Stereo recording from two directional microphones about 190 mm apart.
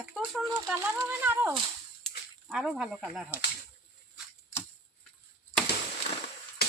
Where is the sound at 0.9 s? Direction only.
15° right (ahead or behind).